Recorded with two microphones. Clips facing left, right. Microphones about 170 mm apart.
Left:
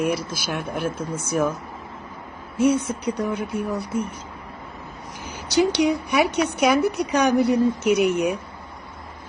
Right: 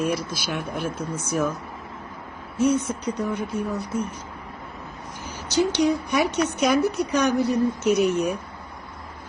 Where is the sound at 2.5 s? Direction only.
10° left (ahead or behind).